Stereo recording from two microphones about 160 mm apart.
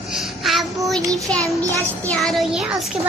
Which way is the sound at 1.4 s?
20° right (ahead or behind).